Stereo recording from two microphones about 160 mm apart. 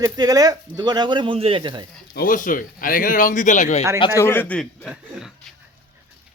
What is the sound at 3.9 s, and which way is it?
Speech, 30° left (ahead or behind).